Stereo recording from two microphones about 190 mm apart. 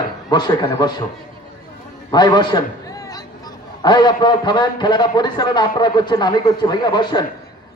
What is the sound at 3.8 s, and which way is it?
A man's voice, 20° left (ahead or behind).